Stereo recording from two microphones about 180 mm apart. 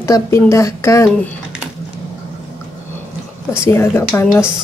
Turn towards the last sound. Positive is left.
turn(degrees=10)  # may be behind; listen again after turning